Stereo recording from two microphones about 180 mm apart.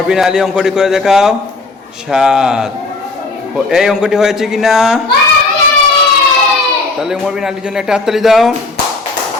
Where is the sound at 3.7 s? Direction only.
5° right (ahead or behind).